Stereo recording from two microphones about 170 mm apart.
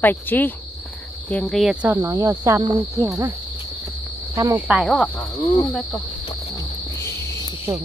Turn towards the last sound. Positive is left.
turn(degrees=-20)  # may be behind; listen again after turning